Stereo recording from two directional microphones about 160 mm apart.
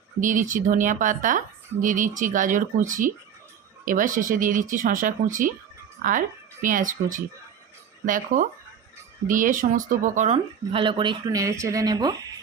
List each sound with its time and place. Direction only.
0.2 s speech: 55° right (ahead or behind); by 11.2 s 30° right (ahead or behind)
11.3 s speech: 20° right (ahead or behind)